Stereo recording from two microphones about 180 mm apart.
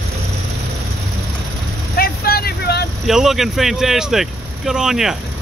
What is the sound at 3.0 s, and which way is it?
Speech, centre (ahead or behind).